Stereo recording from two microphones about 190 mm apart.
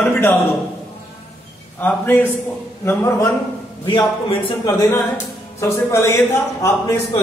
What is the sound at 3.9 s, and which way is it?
Speech, 30° left (ahead or behind).